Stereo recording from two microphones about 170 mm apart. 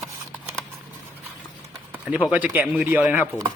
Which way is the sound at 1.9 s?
10° right (ahead or behind).